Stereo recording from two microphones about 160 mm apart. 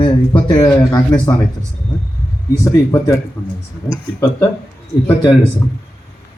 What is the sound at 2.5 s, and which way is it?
Speech, 20° left (ahead or behind).